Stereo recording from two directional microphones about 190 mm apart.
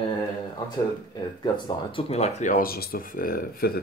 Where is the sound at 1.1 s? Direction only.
25° left (ahead or behind).